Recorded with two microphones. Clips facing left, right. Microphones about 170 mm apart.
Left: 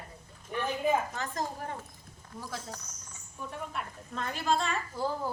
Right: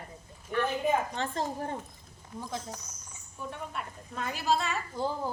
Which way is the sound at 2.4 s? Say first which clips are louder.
Right 3 dB; 20° right (ahead or behind).